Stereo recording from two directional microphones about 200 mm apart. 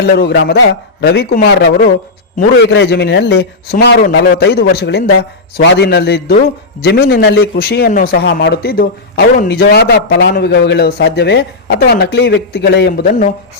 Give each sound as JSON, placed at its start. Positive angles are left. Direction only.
{"t": 0.0, "sound": "a man's voice", "side_deg": 55}